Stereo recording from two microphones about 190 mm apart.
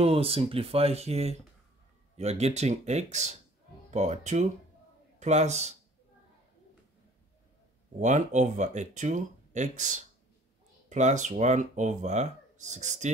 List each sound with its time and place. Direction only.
0.0 s speech: 30° right (ahead or behind)
8.0 s speech: 40° right (ahead or behind)